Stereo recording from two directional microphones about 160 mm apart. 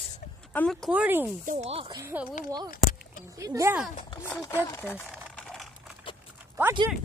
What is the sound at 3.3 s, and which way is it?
Speech, 20° right (ahead or behind).